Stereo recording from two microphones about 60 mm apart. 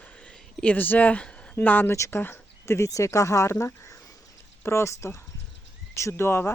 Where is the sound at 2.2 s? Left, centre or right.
Left.